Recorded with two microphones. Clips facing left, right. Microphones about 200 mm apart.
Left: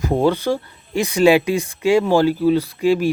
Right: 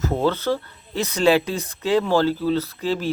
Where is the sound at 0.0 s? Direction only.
15° left (ahead or behind).